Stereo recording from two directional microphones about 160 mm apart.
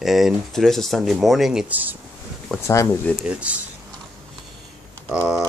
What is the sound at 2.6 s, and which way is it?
Speech, 20° left (ahead or behind).